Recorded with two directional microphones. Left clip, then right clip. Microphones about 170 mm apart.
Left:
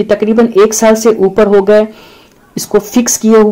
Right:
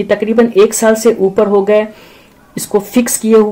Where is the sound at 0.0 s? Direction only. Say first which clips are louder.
Left 2 dB; 35° left (ahead or behind).